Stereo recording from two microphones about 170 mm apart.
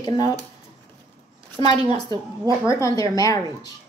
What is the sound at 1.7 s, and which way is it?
A woman's voice, 25° left (ahead or behind).